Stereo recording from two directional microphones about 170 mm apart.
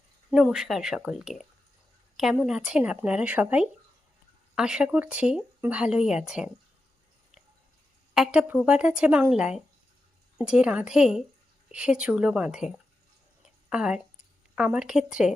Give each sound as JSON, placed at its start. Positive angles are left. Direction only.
{"t": 0.3, "sound": "speech", "side_deg": -5}
{"t": 8.1, "sound": "speech", "side_deg": -5}
{"t": 13.4, "sound": "a sound", "side_deg": -5}
{"t": 14.5, "sound": "speech", "side_deg": -5}